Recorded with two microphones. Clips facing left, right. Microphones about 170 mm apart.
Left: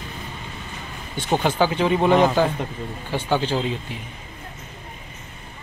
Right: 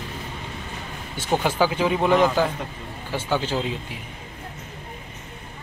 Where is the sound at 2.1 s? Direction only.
20° left (ahead or behind).